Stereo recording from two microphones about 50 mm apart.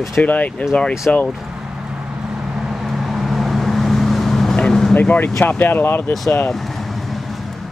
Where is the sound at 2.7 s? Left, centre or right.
Centre.